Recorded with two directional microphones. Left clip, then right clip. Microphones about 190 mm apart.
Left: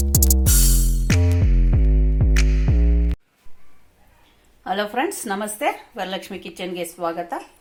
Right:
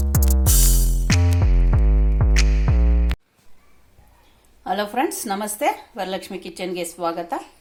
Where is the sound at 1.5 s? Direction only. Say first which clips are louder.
Even; 40° right (ahead or behind).